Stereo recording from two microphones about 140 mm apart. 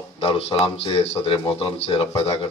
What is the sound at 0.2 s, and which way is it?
A man's voice, 40° left (ahead or behind).